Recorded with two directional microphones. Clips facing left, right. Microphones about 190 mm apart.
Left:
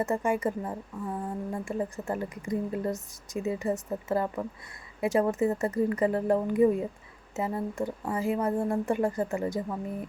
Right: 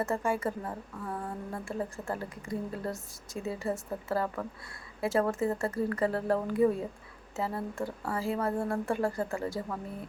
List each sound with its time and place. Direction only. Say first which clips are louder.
0.0 s speech: left 3 dB; 15° left (ahead or behind)